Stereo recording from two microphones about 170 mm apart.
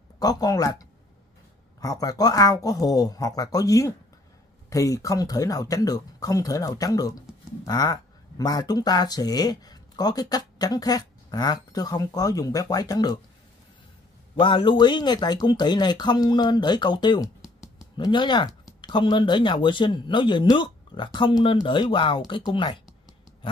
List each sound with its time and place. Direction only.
0.2 s speech: 20° left (ahead or behind)
1.8 s speech: 20° left (ahead or behind)
14.4 s speech: 30° left (ahead or behind)
17.4 s a sound: centre (ahead or behind)
17.9 s speech: 30° left (ahead or behind)